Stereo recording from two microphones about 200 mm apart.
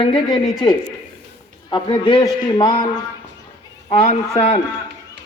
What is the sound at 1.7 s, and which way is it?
A man's voice, 25° left (ahead or behind).